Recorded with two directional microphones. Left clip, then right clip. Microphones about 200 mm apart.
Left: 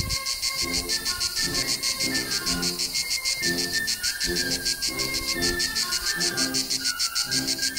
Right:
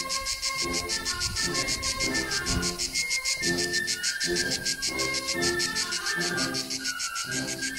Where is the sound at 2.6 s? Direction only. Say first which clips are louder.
Left 2 dB; 15° right (ahead or behind).